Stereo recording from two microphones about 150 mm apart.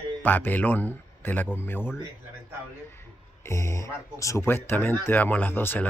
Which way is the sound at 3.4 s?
20° left (ahead or behind).